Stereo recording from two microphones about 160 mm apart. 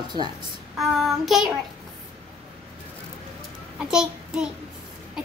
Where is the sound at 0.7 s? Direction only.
Centre (ahead or behind).